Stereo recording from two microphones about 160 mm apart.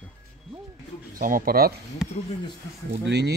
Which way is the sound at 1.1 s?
60° right (ahead or behind).